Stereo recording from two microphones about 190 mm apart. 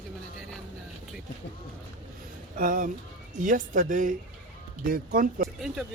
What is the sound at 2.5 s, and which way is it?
Speech, 45° right (ahead or behind).